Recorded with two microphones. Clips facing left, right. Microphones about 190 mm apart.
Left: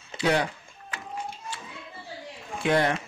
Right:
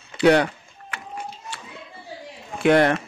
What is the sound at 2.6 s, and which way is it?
Speech, 65° right (ahead or behind).